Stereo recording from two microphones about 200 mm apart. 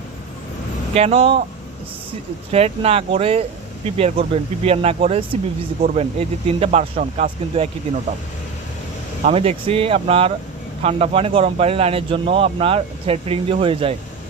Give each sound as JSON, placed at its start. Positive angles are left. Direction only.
{"t": 0.9, "sound": "speech", "side_deg": -30}
{"t": 2.5, "sound": "speech", "side_deg": -30}
{"t": 9.2, "sound": "speech", "side_deg": -30}